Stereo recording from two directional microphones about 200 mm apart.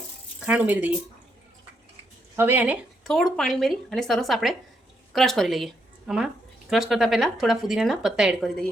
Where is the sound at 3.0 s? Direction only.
Centre (ahead or behind).